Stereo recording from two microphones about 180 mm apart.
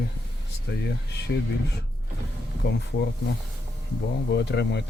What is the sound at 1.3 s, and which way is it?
Speech, 85° left.